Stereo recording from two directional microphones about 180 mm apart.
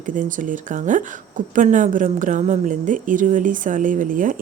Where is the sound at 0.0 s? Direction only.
45° right (ahead or behind).